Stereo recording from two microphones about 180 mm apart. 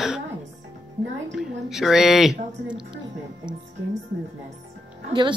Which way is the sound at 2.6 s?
25° right (ahead or behind).